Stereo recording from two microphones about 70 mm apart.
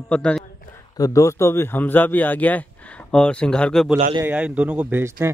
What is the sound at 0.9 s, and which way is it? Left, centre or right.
Speech, left.